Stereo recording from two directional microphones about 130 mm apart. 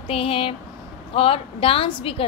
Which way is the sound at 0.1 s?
45° left (ahead or behind).